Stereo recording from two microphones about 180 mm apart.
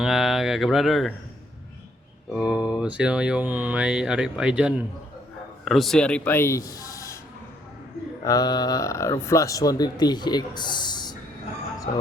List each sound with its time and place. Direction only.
0.0 s speech: centre (ahead or behind)
2.3 s a man's voice: 5° right (ahead or behind); by 7.2 s 15° left (ahead or behind)
8.2 s speech: 20° left (ahead or behind)
11.9 s speech: 60° left (ahead or behind)